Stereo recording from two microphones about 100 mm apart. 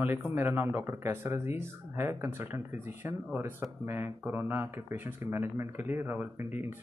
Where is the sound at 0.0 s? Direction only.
20° right (ahead or behind).